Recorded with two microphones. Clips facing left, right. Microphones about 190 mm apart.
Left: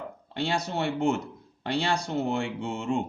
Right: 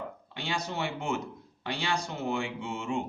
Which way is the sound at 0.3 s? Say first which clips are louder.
Left 5 dB; 60° left (ahead or behind).